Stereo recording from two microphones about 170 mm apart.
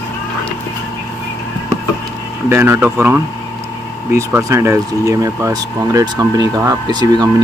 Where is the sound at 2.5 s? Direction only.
15° right (ahead or behind).